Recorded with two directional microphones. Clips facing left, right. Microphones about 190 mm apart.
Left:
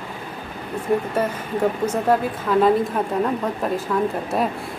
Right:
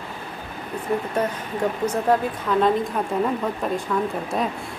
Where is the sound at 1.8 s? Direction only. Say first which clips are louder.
Left 1 dB; 10° left (ahead or behind).